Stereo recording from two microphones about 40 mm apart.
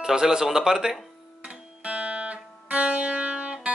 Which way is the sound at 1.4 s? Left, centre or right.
Right.